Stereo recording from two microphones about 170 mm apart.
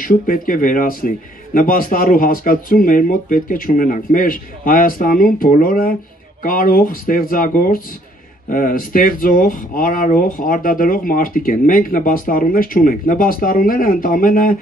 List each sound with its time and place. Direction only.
0.0 s speech: 55° left (ahead or behind)